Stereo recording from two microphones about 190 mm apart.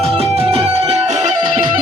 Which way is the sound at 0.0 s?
30° right (ahead or behind).